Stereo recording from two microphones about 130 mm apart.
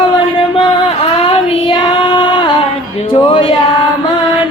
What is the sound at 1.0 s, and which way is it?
Child singing, 45° left (ahead or behind).